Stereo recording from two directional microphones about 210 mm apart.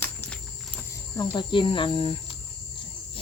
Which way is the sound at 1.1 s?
20° left (ahead or behind).